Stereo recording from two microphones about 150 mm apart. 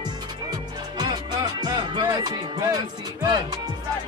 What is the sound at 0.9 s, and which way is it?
Music, 30° right (ahead or behind).